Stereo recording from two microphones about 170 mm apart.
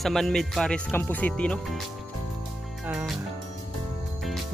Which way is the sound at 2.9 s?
5° right (ahead or behind).